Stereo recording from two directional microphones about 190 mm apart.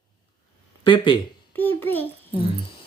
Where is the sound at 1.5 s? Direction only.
10° left (ahead or behind).